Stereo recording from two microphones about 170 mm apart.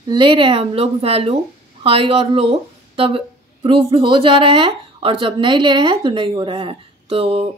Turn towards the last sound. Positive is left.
turn(degrees=-35)  # may be behind; listen again after turning